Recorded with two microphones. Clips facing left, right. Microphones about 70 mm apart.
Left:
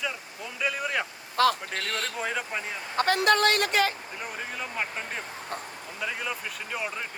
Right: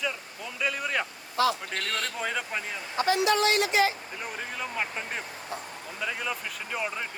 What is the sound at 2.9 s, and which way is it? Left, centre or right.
A woman's voice, left.